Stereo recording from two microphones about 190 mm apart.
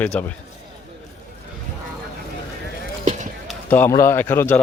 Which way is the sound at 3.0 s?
40° right (ahead or behind).